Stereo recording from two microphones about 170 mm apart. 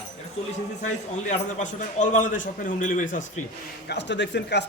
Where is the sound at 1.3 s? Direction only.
45° left (ahead or behind).